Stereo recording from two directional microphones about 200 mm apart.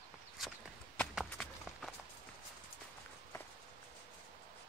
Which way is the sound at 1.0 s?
Centre (ahead or behind).